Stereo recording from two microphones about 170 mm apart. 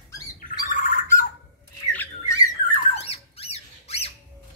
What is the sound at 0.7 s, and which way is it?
Bird, 50° left (ahead or behind).